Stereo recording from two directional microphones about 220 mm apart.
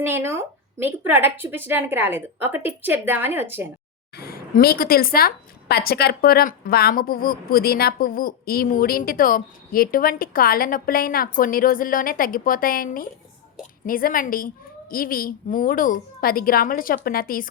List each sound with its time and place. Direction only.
0.0 s speech: 10° right (ahead or behind)
4.1 s a woman's voice: 45° left (ahead or behind)